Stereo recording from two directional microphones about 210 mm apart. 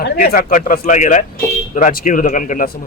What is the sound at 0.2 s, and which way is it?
A man's voice, 40° left (ahead or behind).